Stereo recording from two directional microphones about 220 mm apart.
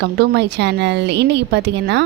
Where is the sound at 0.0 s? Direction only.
50° right (ahead or behind).